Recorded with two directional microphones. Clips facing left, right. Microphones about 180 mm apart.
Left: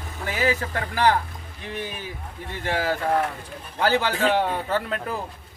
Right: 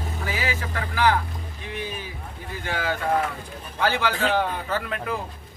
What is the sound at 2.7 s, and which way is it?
Speech, 40° left (ahead or behind).